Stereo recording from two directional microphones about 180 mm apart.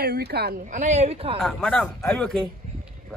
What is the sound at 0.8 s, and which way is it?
Speech, 35° right (ahead or behind).